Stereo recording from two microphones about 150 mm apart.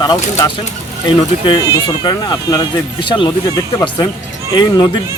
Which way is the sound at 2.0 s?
25° left (ahead or behind).